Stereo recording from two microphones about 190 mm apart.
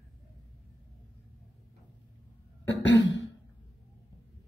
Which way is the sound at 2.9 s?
70° left (ahead or behind).